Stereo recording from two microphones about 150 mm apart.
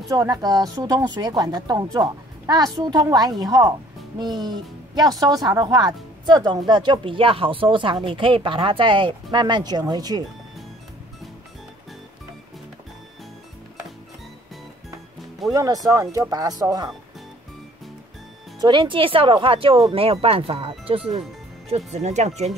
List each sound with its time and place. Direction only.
0.1 s speech: 25° right (ahead or behind)
15.5 s speech: 25° right (ahead or behind)
18.6 s speech: 30° right (ahead or behind); by 22.5 s 50° right (ahead or behind)